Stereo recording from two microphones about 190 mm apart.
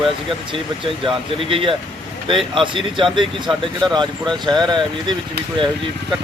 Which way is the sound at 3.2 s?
Centre (ahead or behind).